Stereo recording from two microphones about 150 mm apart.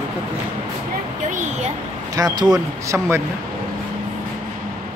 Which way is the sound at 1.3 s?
50° right (ahead or behind).